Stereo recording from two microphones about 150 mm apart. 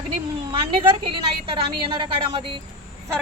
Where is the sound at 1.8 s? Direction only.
35° right (ahead or behind).